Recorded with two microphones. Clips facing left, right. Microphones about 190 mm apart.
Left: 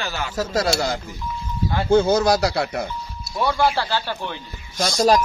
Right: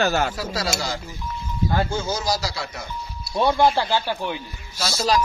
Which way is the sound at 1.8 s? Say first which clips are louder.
Left 9 dB; 60° left (ahead or behind).